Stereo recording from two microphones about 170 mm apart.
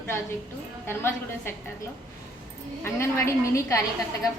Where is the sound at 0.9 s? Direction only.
15° left (ahead or behind).